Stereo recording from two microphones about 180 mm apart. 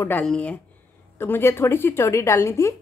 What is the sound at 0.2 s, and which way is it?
A woman's voice, 5° left (ahead or behind).